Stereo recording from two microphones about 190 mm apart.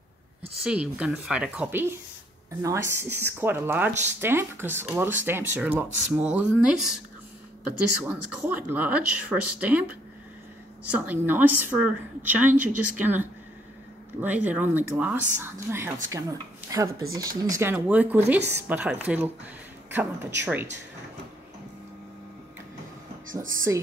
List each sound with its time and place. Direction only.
0.7 s speech: 5° right (ahead or behind)
8.0 s speech: 5° right (ahead or behind)
10.9 s speech: 10° right (ahead or behind)